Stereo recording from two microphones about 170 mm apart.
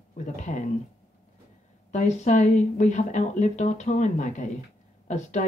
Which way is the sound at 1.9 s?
45° left (ahead or behind).